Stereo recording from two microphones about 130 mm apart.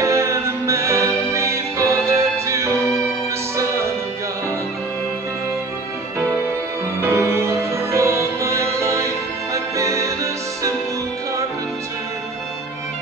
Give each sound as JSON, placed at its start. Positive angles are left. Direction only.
{"t": 0.0, "sound": "music", "side_deg": -20}
{"t": 7.0, "sound": "music", "side_deg": -20}